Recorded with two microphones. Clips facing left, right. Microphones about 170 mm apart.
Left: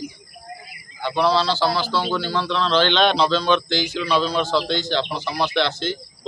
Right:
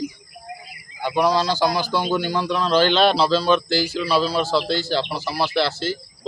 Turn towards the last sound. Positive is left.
turn(degrees=-5)  # may be behind; listen again after turning